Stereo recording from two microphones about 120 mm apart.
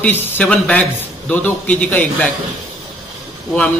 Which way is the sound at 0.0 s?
10° left (ahead or behind).